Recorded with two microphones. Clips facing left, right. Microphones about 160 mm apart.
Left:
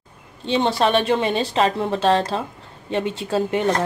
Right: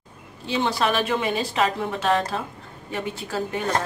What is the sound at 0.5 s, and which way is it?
A woman's voice, 25° left (ahead or behind).